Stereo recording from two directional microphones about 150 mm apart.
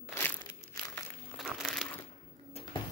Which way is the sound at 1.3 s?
Centre (ahead or behind).